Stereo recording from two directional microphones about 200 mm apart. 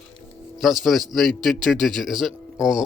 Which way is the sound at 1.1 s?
Centre (ahead or behind).